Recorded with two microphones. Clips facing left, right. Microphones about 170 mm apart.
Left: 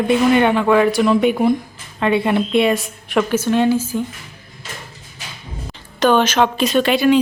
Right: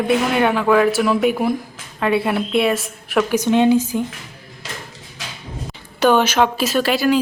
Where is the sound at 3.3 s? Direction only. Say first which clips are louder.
Right 3 dB; 15° right (ahead or behind).